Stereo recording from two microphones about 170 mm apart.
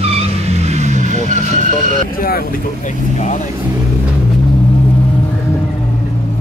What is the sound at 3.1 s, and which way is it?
Speech, 45° left (ahead or behind).